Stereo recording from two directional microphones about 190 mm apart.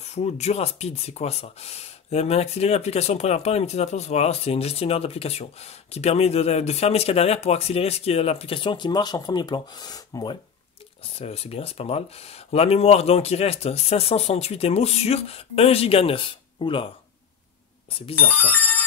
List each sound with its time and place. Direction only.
0.0 s speech: 35° left (ahead or behind)
11.1 s speech: 30° left (ahead or behind)
18.4 s music: 10° left (ahead or behind)